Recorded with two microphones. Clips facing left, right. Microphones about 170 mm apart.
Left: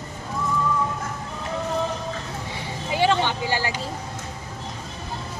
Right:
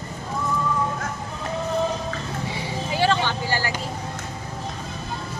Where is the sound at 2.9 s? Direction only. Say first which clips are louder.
Left 1 dB; 20° left (ahead or behind).